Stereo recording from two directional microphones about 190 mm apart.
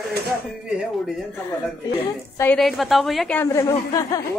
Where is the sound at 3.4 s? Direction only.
15° left (ahead or behind).